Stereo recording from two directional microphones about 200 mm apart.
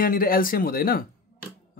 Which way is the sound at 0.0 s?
45° left (ahead or behind).